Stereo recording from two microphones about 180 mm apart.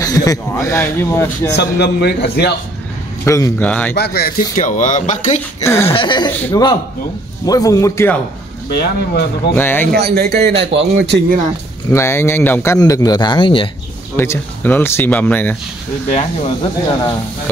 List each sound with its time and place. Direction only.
0.0 s speech: 20° left (ahead or behind)
1.5 s a man's voice: 65° left (ahead or behind)
3.3 s speech: 15° left (ahead or behind)
3.9 s speech: 60° left (ahead or behind); by 5.4 s 45° left (ahead or behind)
5.6 s speech: 15° left (ahead or behind)
5.9 s speech: 25° left (ahead or behind)
8.6 s speech: 60° left (ahead or behind)
9.6 s speech: 10° left (ahead or behind)
9.9 s a man's voice: 60° right (ahead or behind); by 11.1 s 85° right
11.9 s speech: 15° left (ahead or behind)
14.1 s speech: 15° left (ahead or behind)
16.1 s speech: 40° left (ahead or behind)